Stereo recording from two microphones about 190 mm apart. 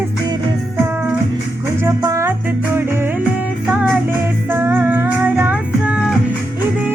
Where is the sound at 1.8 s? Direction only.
15° right (ahead or behind).